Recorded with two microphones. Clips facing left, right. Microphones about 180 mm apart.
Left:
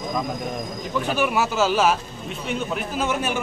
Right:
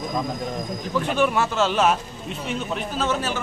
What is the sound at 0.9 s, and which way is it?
A man's voice, 5° left (ahead or behind).